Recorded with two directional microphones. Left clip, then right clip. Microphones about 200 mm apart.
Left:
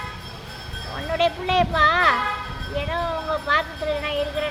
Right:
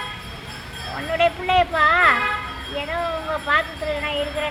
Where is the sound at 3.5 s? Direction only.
20° left (ahead or behind).